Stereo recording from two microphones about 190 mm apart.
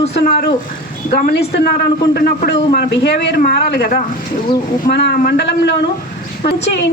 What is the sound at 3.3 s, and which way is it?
Speech, 50° left (ahead or behind).